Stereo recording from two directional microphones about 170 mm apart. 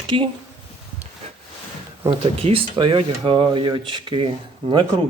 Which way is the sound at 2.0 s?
35° right (ahead or behind).